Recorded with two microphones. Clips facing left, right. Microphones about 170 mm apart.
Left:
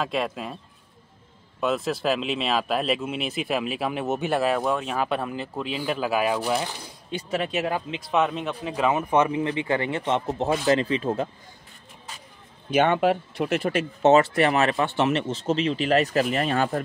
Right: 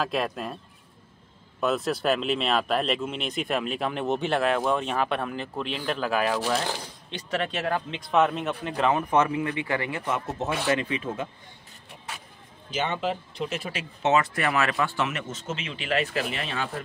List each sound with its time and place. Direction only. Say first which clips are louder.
0.0 s speech: left 1 dB; centre (ahead or behind)
1.6 s speech: left 1 dB; centre (ahead or behind)
8.9 s speech: left 3 dB; 15° left (ahead or behind); by 11.2 s 35° left (ahead or behind)
12.7 s speech: left 8 dB; 60° left (ahead or behind)
14.0 s speech: left 6 dB; 30° left (ahead or behind)